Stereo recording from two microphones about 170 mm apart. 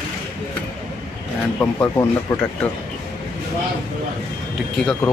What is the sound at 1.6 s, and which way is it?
Speech, 15° left (ahead or behind).